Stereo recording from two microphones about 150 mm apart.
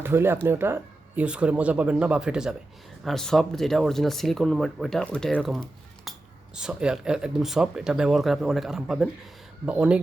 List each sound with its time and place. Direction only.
0.0 s speech: 15° right (ahead or behind); by 5.6 s centre (ahead or behind)
6.1 s a sound: centre (ahead or behind)
6.6 s speech: 5° right (ahead or behind)